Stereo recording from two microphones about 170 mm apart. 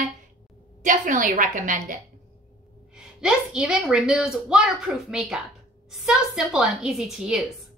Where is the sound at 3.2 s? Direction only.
5° right (ahead or behind).